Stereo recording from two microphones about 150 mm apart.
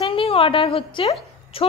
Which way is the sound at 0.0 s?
40° left (ahead or behind).